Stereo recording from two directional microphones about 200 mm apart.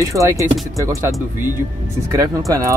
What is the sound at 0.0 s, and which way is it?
Speech, 15° right (ahead or behind).